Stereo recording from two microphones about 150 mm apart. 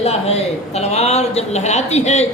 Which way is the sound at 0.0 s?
45° left (ahead or behind).